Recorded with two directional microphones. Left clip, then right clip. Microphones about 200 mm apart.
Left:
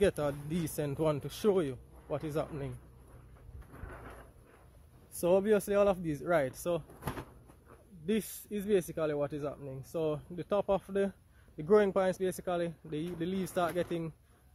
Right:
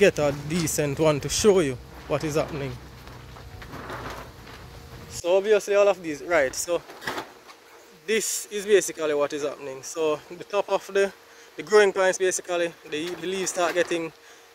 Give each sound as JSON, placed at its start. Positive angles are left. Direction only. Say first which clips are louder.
{"t": 0.0, "sound": "speech", "louder": "right 10 dB", "side_deg": 15}
{"t": 5.2, "sound": "speech", "louder": "right 7 dB", "side_deg": 25}
{"t": 8.1, "sound": "speech", "louder": "right 10 dB", "side_deg": 5}